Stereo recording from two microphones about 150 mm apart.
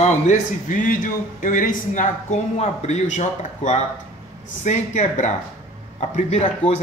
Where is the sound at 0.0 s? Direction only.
55° left (ahead or behind).